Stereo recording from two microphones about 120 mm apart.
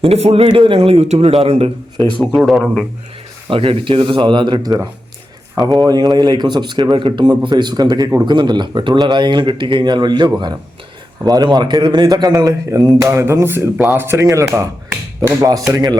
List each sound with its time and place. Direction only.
0.0 s a man's voice: 60° right (ahead or behind)
2.4 s a man's voice: centre (ahead or behind)
3.5 s a man's voice: 50° right (ahead or behind); by 16.0 s 30° right (ahead or behind)